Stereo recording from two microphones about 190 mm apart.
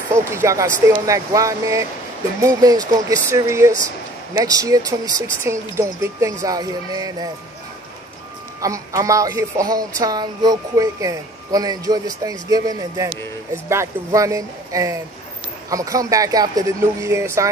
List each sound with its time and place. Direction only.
0.1 s speech: 15° right (ahead or behind)
8.5 s speech: 15° right (ahead or behind)